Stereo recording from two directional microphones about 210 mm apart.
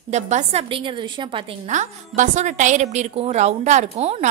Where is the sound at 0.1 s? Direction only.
30° right (ahead or behind).